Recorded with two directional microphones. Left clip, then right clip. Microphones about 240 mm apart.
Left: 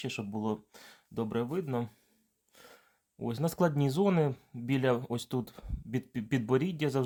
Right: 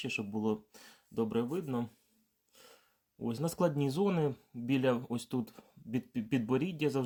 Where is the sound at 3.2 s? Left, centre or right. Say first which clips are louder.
Left 2 dB; left.